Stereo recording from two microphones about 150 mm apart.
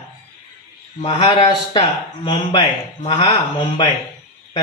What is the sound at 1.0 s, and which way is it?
Speech, 40° left (ahead or behind).